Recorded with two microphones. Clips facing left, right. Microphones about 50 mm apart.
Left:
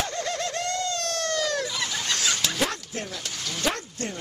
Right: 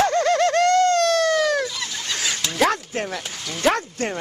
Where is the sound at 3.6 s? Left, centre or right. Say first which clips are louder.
Right 9 dB; right.